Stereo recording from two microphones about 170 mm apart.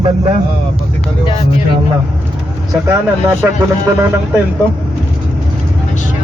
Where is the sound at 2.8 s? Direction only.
15° right (ahead or behind).